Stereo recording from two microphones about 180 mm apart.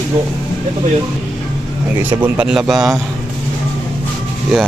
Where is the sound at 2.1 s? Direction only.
10° right (ahead or behind).